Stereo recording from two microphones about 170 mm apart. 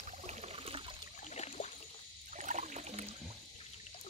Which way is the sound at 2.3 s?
45° right (ahead or behind).